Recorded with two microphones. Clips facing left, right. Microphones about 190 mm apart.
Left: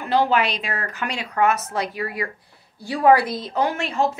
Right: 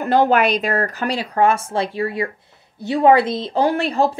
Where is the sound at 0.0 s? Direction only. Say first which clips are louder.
Right 4 dB; 50° right (ahead or behind).